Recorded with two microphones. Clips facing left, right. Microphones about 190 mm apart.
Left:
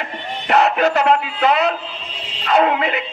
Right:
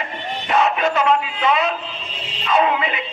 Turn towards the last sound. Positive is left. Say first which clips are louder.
# left 2 dB
turn(degrees=60)  # may be behind; listen again after turning